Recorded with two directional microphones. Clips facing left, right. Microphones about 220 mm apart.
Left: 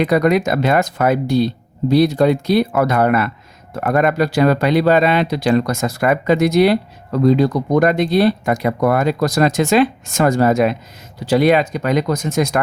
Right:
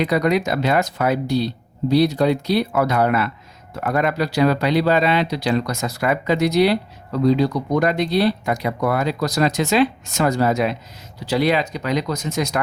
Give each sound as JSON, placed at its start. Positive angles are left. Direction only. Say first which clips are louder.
{"t": 0.0, "sound": "speech", "louder": "left 4 dB", "side_deg": 50}